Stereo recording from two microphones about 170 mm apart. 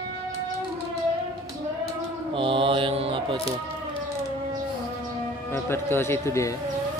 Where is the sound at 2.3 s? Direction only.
30° right (ahead or behind).